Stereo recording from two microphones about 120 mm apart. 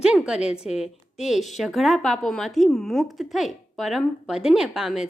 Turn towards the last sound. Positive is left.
turn(degrees=-5)  # may be behind; listen again after turning